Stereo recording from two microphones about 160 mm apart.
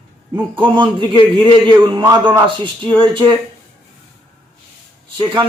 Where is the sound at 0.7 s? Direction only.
30° right (ahead or behind).